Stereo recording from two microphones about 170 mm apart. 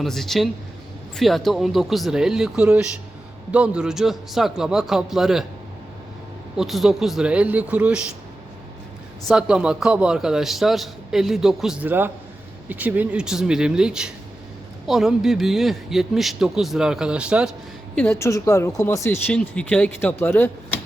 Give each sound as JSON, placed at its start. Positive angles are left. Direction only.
{"t": 0.0, "sound": "a man's voice", "side_deg": 0}
{"t": 6.6, "sound": "a man's voice", "side_deg": 0}
{"t": 9.2, "sound": "a man's voice", "side_deg": -5}
{"t": 17.9, "sound": "speech", "side_deg": 10}